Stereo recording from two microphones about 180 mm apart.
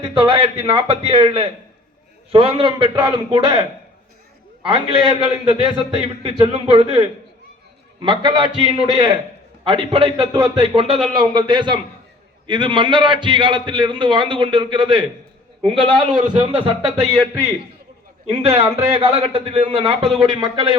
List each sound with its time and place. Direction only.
0.0 s a man's voice: 30° right (ahead or behind)
17.0 s a man's voice: 5° left (ahead or behind)
18.3 s a man's voice: 30° right (ahead or behind)